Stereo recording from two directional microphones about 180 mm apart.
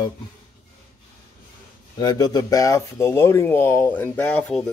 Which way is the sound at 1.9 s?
20° left (ahead or behind).